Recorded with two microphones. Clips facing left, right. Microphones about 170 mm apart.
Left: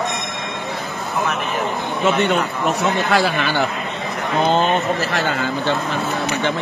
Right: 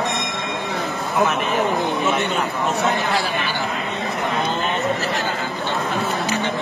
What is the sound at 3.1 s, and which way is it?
Speech, 80° left.